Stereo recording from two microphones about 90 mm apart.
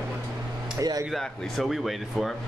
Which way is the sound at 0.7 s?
40° right (ahead or behind).